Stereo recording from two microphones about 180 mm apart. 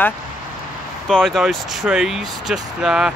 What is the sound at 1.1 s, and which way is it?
Speech, centre (ahead or behind).